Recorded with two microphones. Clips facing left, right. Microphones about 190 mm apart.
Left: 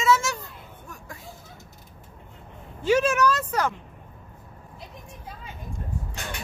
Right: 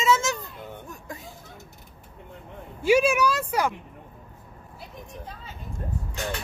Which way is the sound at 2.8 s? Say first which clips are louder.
Right 1 dB; 10° right (ahead or behind).